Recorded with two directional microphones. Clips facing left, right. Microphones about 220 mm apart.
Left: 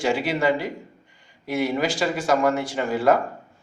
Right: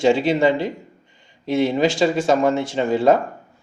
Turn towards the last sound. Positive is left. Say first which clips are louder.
# right 4 dB
turn(degrees=-25)  # may be behind; listen again after turning